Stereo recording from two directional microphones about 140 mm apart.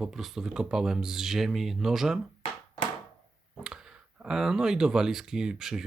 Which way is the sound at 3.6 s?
5° right (ahead or behind).